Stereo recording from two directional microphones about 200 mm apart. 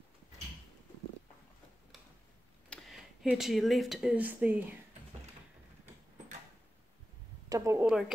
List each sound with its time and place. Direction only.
2.7 s speech: centre (ahead or behind)
7.4 s a woman's voice: 15° right (ahead or behind)
7.8 s a woman's voice: 5° right (ahead or behind)